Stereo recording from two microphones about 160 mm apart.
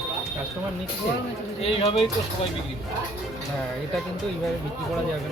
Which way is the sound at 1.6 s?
35° left (ahead or behind).